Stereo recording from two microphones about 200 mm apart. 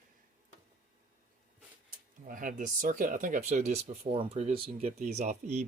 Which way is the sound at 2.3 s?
40° right (ahead or behind).